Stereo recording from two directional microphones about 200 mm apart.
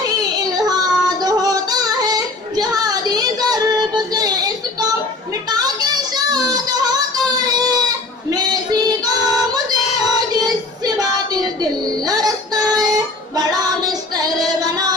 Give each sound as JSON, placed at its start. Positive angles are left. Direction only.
{"t": 0.7, "sound": "yodeling", "side_deg": -20}
{"t": 9.9, "sound": "child singing", "side_deg": -20}